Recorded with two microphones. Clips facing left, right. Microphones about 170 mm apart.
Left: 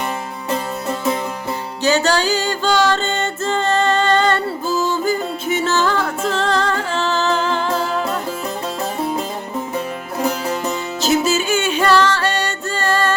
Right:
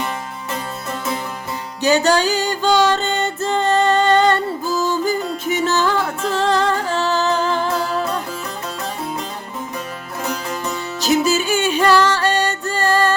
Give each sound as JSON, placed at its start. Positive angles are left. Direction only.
{"t": 1.8, "sound": "music", "side_deg": -15}
{"t": 9.7, "sound": "music", "side_deg": 30}
{"t": 11.4, "sound": "music", "side_deg": -15}